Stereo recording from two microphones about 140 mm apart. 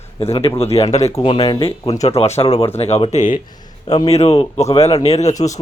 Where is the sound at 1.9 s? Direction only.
45° left (ahead or behind).